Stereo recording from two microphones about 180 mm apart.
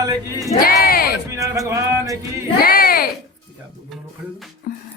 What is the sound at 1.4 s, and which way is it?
Speech, 15° right (ahead or behind).